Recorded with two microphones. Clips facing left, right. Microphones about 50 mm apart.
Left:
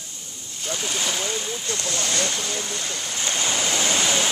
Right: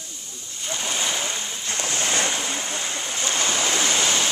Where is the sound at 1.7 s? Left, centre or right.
Right.